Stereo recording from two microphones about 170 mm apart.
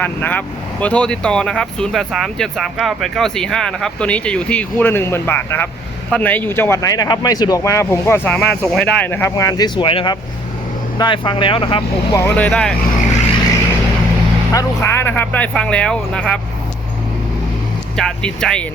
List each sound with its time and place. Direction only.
0.0 s speech: 10° left (ahead or behind)
9.3 s speech: 20° left (ahead or behind)
12.1 s speech: 10° left (ahead or behind)
14.5 s speech: 15° left (ahead or behind)
17.9 s speech: 5° left (ahead or behind)